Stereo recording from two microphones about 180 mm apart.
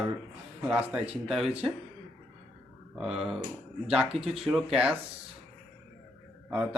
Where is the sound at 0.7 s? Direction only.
5° right (ahead or behind).